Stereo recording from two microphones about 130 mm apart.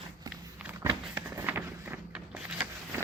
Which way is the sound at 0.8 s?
20° right (ahead or behind).